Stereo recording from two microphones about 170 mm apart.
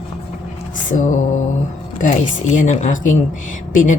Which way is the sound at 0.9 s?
45° left (ahead or behind).